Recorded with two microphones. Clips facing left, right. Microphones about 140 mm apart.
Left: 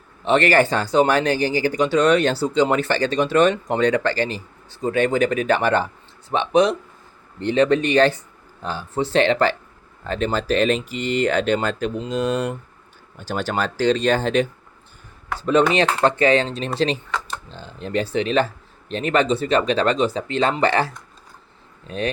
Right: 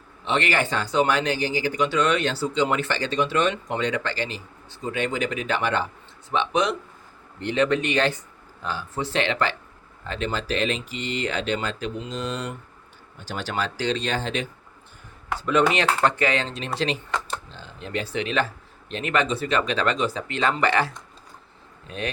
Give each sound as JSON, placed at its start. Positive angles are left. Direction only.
{"t": 0.3, "sound": "speech", "side_deg": 45}
{"t": 15.4, "sound": "speech", "side_deg": 30}
{"t": 21.8, "sound": "speech", "side_deg": 35}